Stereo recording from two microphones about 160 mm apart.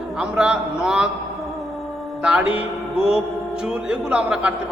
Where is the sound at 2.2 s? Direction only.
5° right (ahead or behind).